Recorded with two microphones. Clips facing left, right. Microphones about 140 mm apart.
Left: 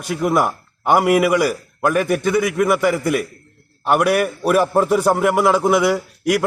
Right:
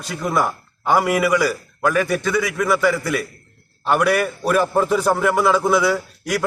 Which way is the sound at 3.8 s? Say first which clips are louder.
Left 2 dB; 10° left (ahead or behind).